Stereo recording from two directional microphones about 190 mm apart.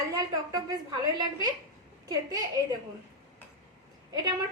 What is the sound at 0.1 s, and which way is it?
A woman's voice, 20° right (ahead or behind).